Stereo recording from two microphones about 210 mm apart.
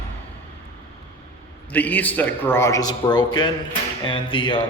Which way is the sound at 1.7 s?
10° left (ahead or behind).